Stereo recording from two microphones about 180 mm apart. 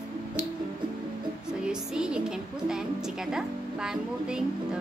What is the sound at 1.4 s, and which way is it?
A woman's voice, 5° right (ahead or behind).